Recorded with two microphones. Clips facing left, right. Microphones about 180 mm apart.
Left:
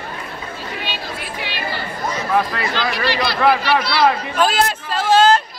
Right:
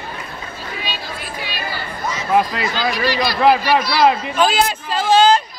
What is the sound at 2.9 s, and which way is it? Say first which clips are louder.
Speech: right 1 dB; 65° left (ahead or behind).